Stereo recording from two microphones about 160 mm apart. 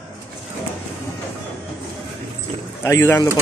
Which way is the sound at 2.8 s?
15° left (ahead or behind).